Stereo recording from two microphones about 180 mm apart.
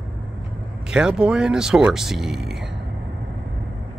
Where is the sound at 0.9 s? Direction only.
5° right (ahead or behind).